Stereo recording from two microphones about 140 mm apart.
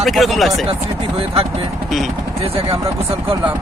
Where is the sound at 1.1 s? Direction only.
40° right (ahead or behind).